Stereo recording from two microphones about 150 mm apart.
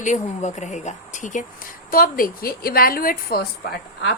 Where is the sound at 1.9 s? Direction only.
70° left (ahead or behind); by 4.1 s 90° left.